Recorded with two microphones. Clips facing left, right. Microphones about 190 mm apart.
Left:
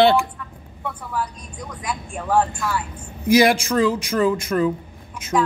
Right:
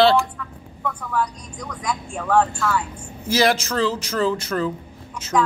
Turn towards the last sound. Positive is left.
turn(degrees=15)  # may be behind; listen again after turning